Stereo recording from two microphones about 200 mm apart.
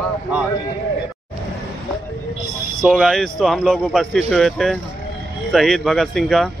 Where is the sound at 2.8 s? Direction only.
Centre (ahead or behind).